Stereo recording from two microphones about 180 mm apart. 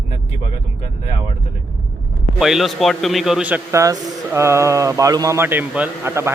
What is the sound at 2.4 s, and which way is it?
A man's voice, centre (ahead or behind).